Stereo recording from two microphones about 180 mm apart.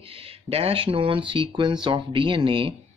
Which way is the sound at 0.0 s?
30° right (ahead or behind).